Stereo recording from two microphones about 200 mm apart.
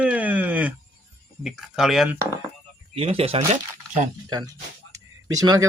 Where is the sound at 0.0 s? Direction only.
5° right (ahead or behind).